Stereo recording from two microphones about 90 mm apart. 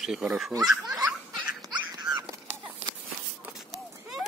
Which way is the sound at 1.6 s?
45° right (ahead or behind).